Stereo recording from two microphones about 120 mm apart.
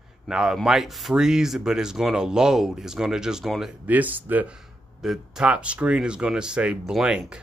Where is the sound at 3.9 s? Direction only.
15° right (ahead or behind).